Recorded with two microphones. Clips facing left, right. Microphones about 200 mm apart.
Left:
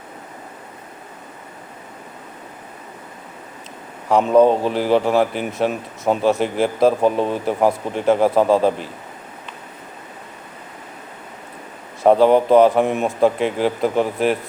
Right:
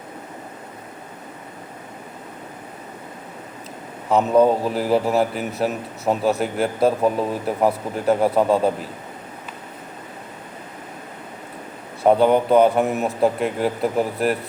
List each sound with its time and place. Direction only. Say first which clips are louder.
4.4 s speech: left 3 dB; 30° left (ahead or behind)
4.7 s a man's voice: left 2 dB; centre (ahead or behind)
6.8 s speech: left 3 dB; 30° left (ahead or behind)
7.3 s a man's voice: left 2 dB; centre (ahead or behind)
12.0 s a man's voice: left 3 dB; centre (ahead or behind)